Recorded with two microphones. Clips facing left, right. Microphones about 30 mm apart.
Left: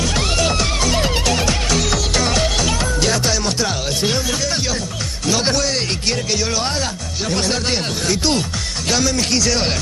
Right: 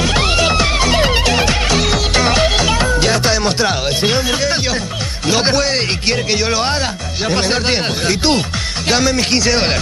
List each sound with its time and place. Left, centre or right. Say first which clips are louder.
0.0 s music: right 4 dB; right
5.2 s speech: right 4 dB; right